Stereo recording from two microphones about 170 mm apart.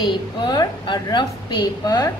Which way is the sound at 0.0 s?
25° left (ahead or behind).